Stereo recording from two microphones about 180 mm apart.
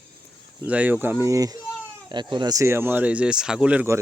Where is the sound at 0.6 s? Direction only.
10° right (ahead or behind).